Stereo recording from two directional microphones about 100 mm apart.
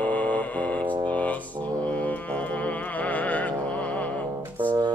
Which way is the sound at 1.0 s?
15° left (ahead or behind).